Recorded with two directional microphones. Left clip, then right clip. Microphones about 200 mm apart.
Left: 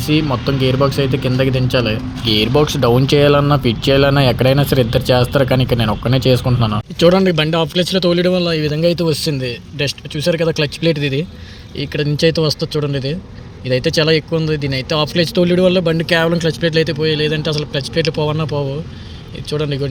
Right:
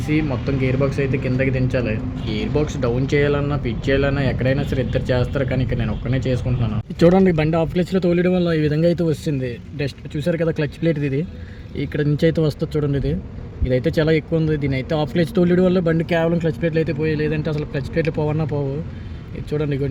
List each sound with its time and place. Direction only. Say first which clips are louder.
0.1 s speech: left 5 dB; 20° left (ahead or behind)
7.3 s speech: left 4 dB; 5° right (ahead or behind)
19.5 s speech: left 3 dB; 5° right (ahead or behind)